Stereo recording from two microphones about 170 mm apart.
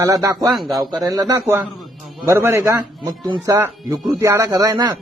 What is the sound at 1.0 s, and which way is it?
A man's voice, 20° right (ahead or behind).